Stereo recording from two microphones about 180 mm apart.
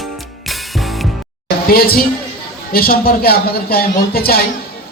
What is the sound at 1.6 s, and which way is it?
Speech, 55° left (ahead or behind).